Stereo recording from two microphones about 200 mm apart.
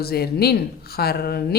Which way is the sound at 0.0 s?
50° left (ahead or behind).